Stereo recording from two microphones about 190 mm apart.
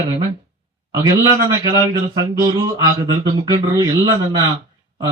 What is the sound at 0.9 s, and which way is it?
A man's voice, 15° right (ahead or behind).